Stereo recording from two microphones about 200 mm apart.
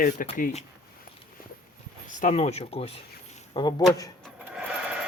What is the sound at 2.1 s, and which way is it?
Speech, 40° left (ahead or behind).